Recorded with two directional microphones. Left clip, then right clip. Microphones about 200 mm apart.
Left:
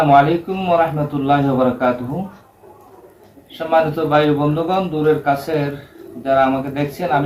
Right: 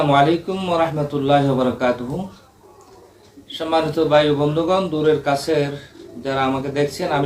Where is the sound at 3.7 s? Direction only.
5° left (ahead or behind).